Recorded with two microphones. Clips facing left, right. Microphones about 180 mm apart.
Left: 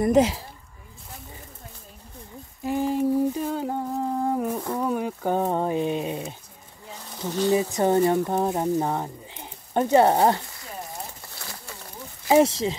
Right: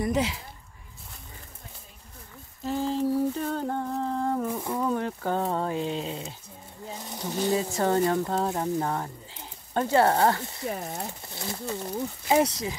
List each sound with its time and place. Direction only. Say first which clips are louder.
0.0 s speech: left 7 dB; 45° left (ahead or behind)
2.6 s speech: left 3 dB; 15° left (ahead or behind)
3.4 s humming: left 2 dB; 10° left (ahead or behind)
4.7 s speech: left 2 dB; 10° left (ahead or behind)
6.9 s a sound: left 2 dB; 15° right (ahead or behind)
7.5 s speech: left 4 dB; 15° left (ahead or behind)
10.4 s speech: right 6 dB; 25° right (ahead or behind)
12.3 s speech: left 5 dB; 25° left (ahead or behind)